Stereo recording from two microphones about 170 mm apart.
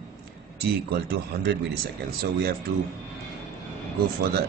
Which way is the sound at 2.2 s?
65° right (ahead or behind).